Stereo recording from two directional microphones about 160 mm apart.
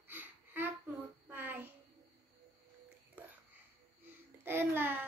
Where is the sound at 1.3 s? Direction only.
10° right (ahead or behind).